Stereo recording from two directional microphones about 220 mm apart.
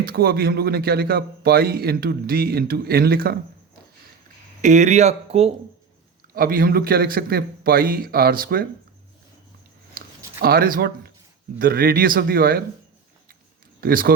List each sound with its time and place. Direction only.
0.0 s speech: 45° right (ahead or behind)
4.6 s speech: 35° right (ahead or behind)
6.3 s speech: 40° right (ahead or behind)
10.4 s speech: 40° right (ahead or behind)
13.8 s speech: 40° right (ahead or behind)